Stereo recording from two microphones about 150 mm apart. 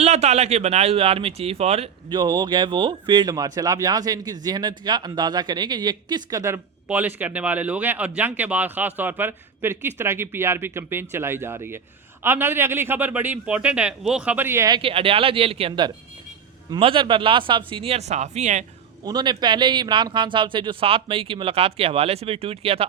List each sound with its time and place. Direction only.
0.0 s speech: 45° right (ahead or behind)
2.1 s speech: 25° right (ahead or behind)
6.8 s speech: 10° right (ahead or behind)
14.7 s speech: 40° right (ahead or behind)
19.0 s speech: 30° right (ahead or behind)